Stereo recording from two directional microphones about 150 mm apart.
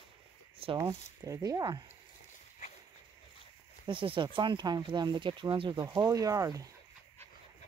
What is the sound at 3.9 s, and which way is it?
Speech, 35° right (ahead or behind).